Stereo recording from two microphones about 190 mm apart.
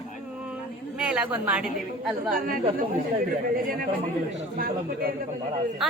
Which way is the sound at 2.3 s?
50° right (ahead or behind).